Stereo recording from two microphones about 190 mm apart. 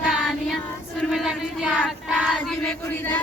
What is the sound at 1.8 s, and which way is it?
Child singing, centre (ahead or behind).